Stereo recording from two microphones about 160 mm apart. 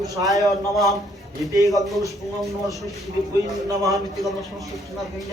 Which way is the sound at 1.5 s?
20° right (ahead or behind).